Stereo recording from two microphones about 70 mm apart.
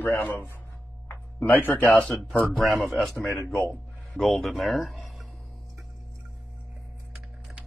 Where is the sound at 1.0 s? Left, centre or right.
Left.